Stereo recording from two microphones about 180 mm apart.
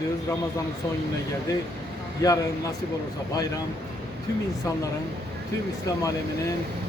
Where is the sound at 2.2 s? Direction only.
20° left (ahead or behind).